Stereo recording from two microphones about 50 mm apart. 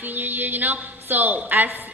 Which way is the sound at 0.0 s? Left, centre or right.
Right.